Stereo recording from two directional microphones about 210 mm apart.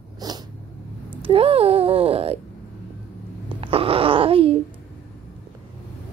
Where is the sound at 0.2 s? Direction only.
20° right (ahead or behind).